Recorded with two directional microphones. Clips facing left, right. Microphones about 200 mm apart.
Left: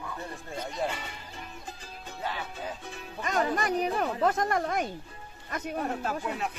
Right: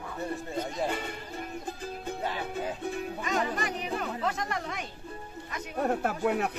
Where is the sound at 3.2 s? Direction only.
45° left (ahead or behind).